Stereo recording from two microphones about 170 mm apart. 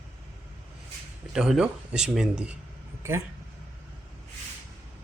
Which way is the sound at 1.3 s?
5° right (ahead or behind).